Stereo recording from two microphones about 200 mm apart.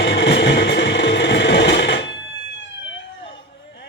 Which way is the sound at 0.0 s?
65° left (ahead or behind).